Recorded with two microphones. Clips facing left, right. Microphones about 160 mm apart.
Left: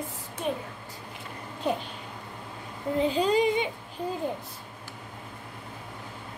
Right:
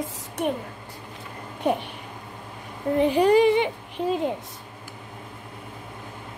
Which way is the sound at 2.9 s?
65° right (ahead or behind).